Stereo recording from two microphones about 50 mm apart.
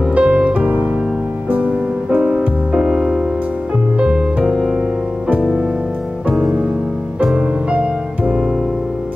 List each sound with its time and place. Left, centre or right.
0.1 s music: right
7.3 s music: right